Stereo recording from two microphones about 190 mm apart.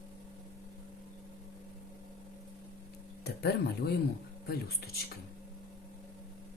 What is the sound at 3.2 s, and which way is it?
Speech, 60° left (ahead or behind).